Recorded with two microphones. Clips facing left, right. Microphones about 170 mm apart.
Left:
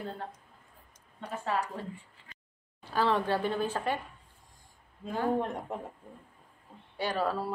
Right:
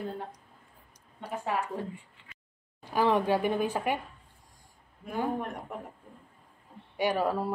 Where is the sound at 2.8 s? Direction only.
15° right (ahead or behind).